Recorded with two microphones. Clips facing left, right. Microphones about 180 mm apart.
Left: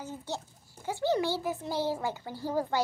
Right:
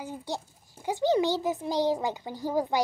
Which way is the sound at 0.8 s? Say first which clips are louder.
Right 4 dB; 15° right (ahead or behind).